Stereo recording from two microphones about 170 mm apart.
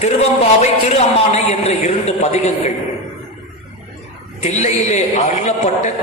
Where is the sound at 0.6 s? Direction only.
40° left (ahead or behind).